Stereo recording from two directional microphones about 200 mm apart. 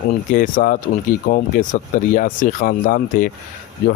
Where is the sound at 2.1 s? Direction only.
40° left (ahead or behind).